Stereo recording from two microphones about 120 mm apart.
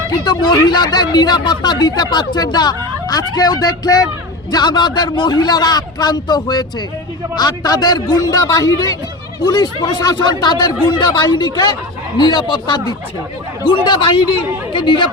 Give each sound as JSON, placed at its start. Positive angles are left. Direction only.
{"t": 0.3, "sound": "speech", "side_deg": 35}
{"t": 13.8, "sound": "speech", "side_deg": 40}